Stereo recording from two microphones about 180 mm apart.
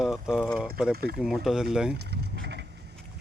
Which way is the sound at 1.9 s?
65° right (ahead or behind).